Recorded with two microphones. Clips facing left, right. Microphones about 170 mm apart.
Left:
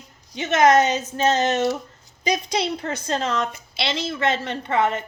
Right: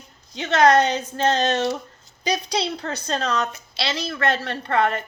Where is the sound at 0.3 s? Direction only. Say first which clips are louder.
Even; 20° left (ahead or behind).